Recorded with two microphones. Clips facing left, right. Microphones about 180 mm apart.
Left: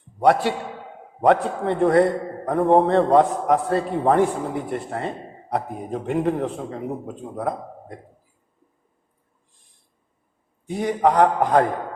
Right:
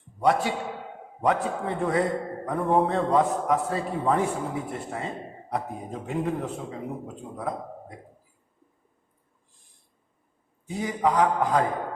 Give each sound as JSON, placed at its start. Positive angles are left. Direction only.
{"t": 0.2, "sound": "a man's voice", "side_deg": 65}
{"t": 10.7, "sound": "a man's voice", "side_deg": 65}